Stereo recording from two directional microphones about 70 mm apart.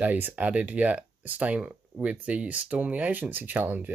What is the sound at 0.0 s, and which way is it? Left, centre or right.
Speech, right.